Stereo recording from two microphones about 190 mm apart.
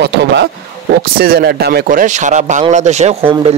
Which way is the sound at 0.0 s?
60° right (ahead or behind).